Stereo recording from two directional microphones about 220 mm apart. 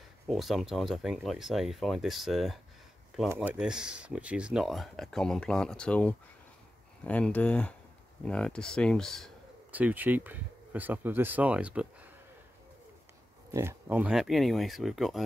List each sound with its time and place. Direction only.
0.3 s speech: centre (ahead or behind)
13.5 s speech: 10° right (ahead or behind)